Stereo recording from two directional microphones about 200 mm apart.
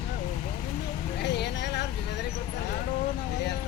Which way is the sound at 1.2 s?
60° left (ahead or behind).